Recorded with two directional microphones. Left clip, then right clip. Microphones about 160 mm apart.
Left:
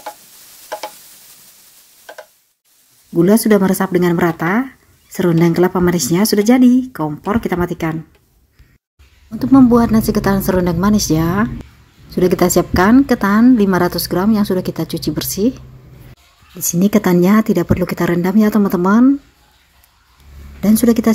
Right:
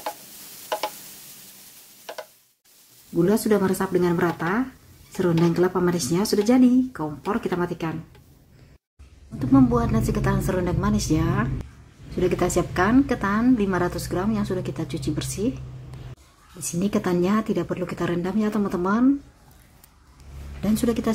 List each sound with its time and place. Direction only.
0.7 s stir: centre (ahead or behind)
3.2 s a woman's voice: 50° left (ahead or behind)
9.4 s a woman's voice: 50° left (ahead or behind)
16.6 s a woman's voice: 50° left (ahead or behind)
20.6 s a woman's voice: 50° left (ahead or behind)